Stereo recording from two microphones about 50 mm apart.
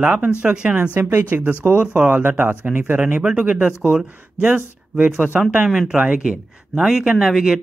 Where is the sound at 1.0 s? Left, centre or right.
Right.